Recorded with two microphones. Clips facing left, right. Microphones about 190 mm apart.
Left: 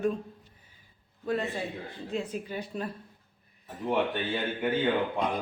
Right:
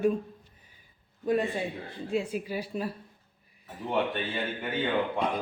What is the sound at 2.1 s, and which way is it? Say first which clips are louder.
Speech: right 3 dB; 10° right (ahead or behind).